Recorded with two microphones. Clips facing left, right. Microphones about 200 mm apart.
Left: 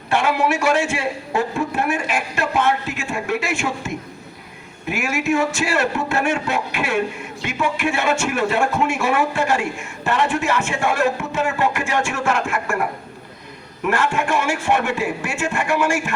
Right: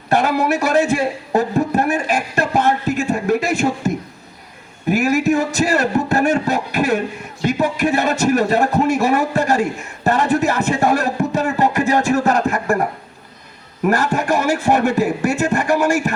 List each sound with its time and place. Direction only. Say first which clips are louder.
0.1 s speech: right 3 dB; 40° right (ahead or behind)